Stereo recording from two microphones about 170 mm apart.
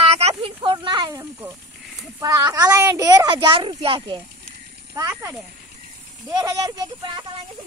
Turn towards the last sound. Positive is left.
turn(degrees=-25)  # may be behind; listen again after turning